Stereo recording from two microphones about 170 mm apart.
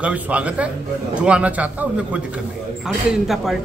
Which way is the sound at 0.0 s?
10° right (ahead or behind).